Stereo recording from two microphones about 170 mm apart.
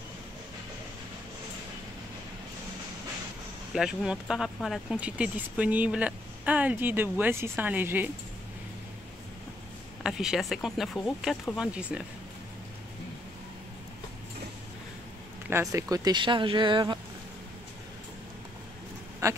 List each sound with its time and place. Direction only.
3.7 s speech: 5° right (ahead or behind)
10.0 s speech: 5° right (ahead or behind)
15.5 s speech: 20° right (ahead or behind)
19.2 s speech: 15° right (ahead or behind)